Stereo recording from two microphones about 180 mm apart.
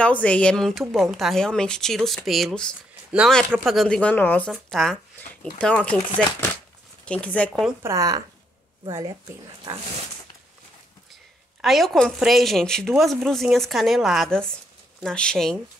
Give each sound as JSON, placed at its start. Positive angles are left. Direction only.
{"t": 0.0, "sound": "a woman's voice", "side_deg": 5}
{"t": 7.1, "sound": "speech", "side_deg": 5}
{"t": 7.8, "sound": "speech", "side_deg": -20}
{"t": 11.6, "sound": "a woman's voice", "side_deg": 0}